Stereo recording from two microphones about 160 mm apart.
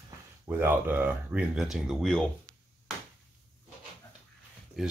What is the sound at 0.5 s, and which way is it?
Speech, 15° right (ahead or behind).